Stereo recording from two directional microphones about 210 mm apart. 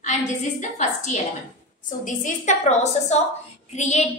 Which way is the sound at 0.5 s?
35° left (ahead or behind).